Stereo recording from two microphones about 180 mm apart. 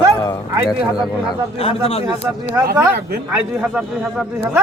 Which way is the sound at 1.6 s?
30° left (ahead or behind).